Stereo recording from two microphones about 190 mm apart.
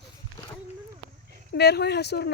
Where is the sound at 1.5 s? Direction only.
60° left (ahead or behind).